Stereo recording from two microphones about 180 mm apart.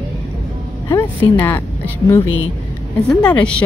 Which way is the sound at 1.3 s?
10° left (ahead or behind).